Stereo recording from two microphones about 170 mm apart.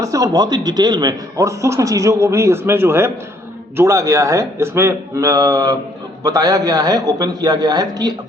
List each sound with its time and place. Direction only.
0.0 s speech: 20° right (ahead or behind)